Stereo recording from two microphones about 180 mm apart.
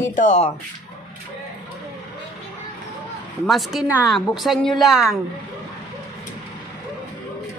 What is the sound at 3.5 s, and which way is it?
A woman's voice, centre (ahead or behind).